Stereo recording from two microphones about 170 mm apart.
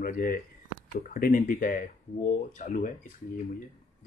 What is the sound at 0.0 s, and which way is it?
Speech, 55° left (ahead or behind).